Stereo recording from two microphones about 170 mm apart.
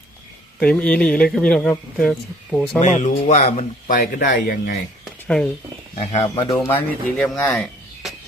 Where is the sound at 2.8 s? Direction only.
45° left (ahead or behind).